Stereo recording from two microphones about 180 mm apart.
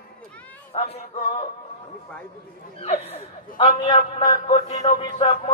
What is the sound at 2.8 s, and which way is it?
Speech, 40° left (ahead or behind).